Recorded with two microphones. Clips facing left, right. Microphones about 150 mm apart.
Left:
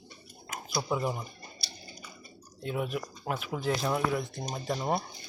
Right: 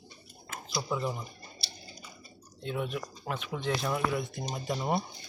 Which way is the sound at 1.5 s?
30° right (ahead or behind).